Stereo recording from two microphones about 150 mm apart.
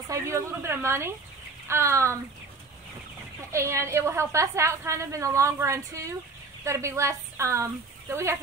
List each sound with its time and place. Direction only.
0.1 s speech: 20° right (ahead or behind)
3.5 s a woman's voice: 20° right (ahead or behind)